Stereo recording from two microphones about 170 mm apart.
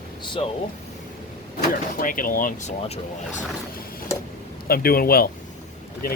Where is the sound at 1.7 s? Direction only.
55° left (ahead or behind).